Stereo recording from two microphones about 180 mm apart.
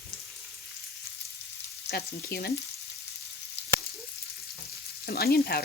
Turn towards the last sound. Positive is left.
turn(degrees=60)  # may be behind; listen again after turning